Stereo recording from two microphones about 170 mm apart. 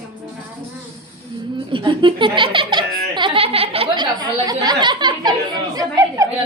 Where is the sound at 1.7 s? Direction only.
30° right (ahead or behind).